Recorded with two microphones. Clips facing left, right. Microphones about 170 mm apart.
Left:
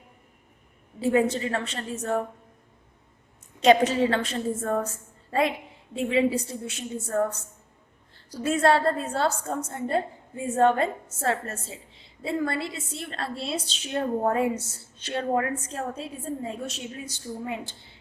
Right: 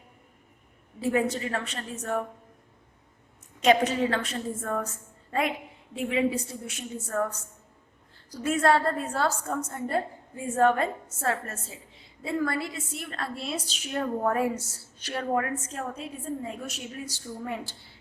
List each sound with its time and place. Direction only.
0.9 s a woman's voice: 30° left (ahead or behind)
3.6 s a woman's voice: 30° left (ahead or behind)